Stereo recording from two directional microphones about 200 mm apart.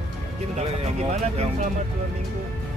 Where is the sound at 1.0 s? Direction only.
30° right (ahead or behind).